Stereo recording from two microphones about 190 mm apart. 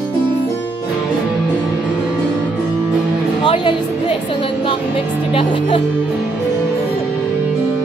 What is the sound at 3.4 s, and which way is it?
Music, 25° left (ahead or behind).